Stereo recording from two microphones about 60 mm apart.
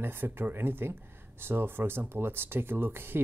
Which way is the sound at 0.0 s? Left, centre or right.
Right.